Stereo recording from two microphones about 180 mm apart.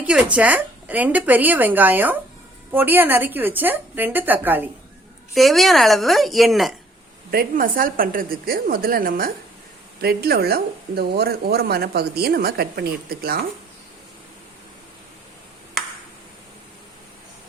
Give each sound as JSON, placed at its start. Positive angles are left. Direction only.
{"t": 0.0, "sound": "a woman's voice", "side_deg": -5}
{"t": 5.3, "sound": "a woman's voice", "side_deg": 0}
{"t": 7.3, "sound": "a woman's voice", "side_deg": -55}